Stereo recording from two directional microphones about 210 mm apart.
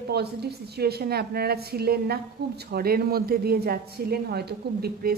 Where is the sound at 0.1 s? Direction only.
50° right (ahead or behind).